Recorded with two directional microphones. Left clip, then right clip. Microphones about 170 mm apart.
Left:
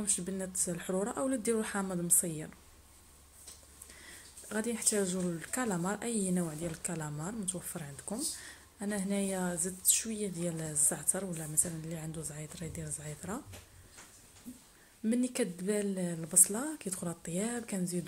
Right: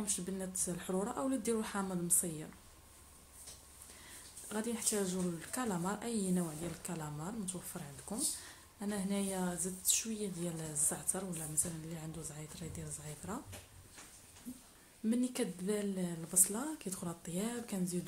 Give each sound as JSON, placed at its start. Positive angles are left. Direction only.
{"t": 0.0, "sound": "speech", "side_deg": 20}
{"t": 4.5, "sound": "speech", "side_deg": 20}
{"t": 15.0, "sound": "speech", "side_deg": 20}